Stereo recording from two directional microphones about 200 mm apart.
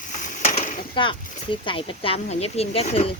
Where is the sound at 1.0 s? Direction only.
25° left (ahead or behind).